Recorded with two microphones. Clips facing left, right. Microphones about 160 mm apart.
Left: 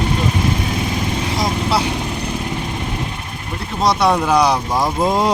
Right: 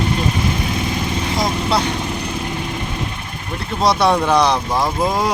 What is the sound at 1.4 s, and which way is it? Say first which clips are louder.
Vehicle: even; 5° left (ahead or behind).